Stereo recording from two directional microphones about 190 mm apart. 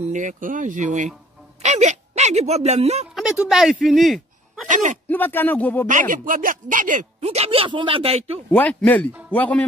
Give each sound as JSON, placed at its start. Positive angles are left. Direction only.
{"t": 0.1, "sound": "speech", "side_deg": -40}
{"t": 3.2, "sound": "speech", "side_deg": 0}
{"t": 4.6, "sound": "speech", "side_deg": -40}
{"t": 5.1, "sound": "speech", "side_deg": 10}
{"t": 5.9, "sound": "speech", "side_deg": -45}
{"t": 8.5, "sound": "speech", "side_deg": 10}